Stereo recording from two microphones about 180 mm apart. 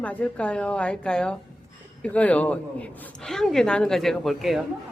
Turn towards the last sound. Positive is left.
turn(degrees=0)  # may be behind; listen again after turning